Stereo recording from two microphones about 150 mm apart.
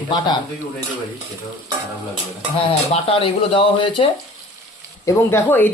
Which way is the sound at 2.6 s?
40° left (ahead or behind).